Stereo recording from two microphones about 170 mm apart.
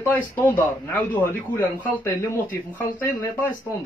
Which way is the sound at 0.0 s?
10° left (ahead or behind).